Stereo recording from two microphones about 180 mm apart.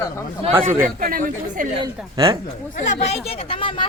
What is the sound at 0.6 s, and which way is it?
Speech, 45° right (ahead or behind).